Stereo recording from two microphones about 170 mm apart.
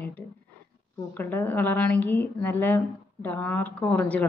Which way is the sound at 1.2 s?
10° left (ahead or behind).